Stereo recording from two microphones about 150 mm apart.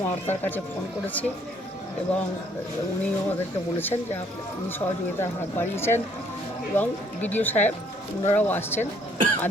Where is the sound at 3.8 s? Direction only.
15° left (ahead or behind).